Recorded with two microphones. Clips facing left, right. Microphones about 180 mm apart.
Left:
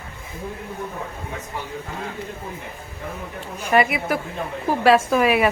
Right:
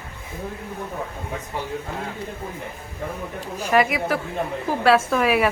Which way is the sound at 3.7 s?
Centre (ahead or behind).